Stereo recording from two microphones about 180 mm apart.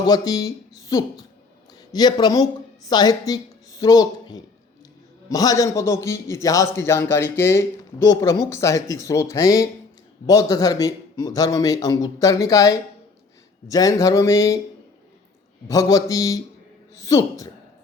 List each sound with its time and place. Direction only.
0.1 s a man's voice: 20° left (ahead or behind)
15.6 s a man's voice: 20° left (ahead or behind)